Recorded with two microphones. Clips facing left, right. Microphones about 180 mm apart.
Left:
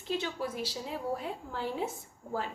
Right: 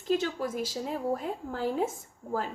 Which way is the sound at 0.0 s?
45° right (ahead or behind).